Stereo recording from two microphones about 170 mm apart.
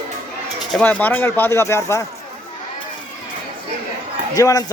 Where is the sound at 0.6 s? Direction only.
5° left (ahead or behind).